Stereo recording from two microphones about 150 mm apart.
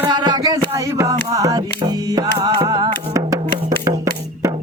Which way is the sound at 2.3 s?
25° right (ahead or behind).